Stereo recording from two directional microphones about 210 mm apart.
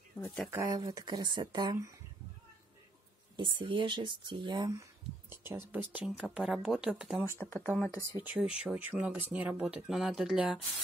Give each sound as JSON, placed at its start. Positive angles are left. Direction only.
{"t": 0.2, "sound": "speech", "side_deg": 5}
{"t": 0.5, "sound": "speech", "side_deg": -15}
{"t": 3.3, "sound": "speech", "side_deg": -25}
{"t": 7.3, "sound": "speech", "side_deg": 10}
{"t": 8.2, "sound": "speech", "side_deg": -10}